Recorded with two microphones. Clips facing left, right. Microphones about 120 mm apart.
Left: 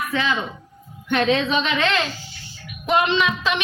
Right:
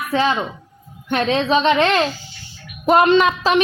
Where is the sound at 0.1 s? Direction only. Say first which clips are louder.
Right 9 dB; 35° right (ahead or behind).